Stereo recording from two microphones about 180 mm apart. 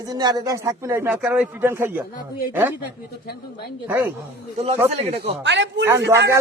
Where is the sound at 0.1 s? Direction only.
25° right (ahead or behind).